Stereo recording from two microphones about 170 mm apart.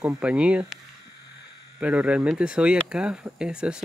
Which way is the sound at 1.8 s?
5° right (ahead or behind).